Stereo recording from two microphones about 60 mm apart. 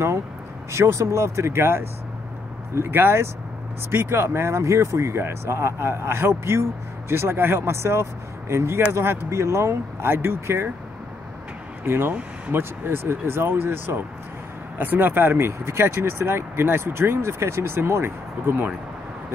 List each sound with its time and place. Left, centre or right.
0.7 s speech: right
11.8 s speech: right